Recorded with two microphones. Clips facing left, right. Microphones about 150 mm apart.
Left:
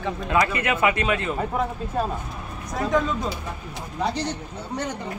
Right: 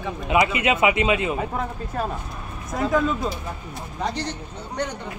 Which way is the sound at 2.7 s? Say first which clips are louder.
Right 1 dB; 5° right (ahead or behind).